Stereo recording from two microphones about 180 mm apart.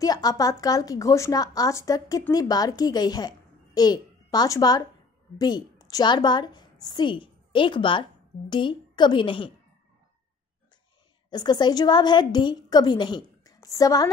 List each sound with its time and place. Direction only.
0.0 s a woman's voice: 20° left (ahead or behind)
11.2 s a woman's voice: 25° left (ahead or behind)